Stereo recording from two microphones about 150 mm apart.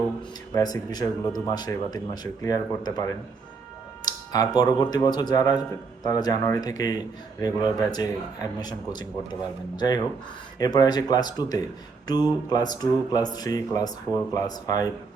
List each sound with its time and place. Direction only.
0.2 s speech: 25° left (ahead or behind)